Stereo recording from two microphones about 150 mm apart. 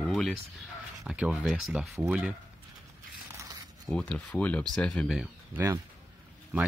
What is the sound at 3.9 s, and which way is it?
Speech, 5° left (ahead or behind).